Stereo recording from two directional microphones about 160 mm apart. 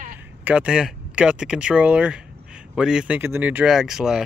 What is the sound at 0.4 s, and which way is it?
Speech, 10° right (ahead or behind).